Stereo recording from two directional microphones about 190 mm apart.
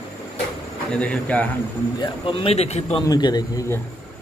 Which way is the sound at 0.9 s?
5° left (ahead or behind).